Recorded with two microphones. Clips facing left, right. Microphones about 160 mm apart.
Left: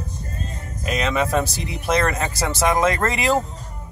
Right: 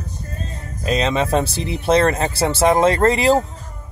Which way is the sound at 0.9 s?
30° right (ahead or behind).